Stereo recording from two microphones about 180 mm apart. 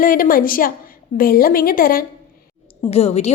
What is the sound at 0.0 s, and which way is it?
A woman's voice, 50° left (ahead or behind).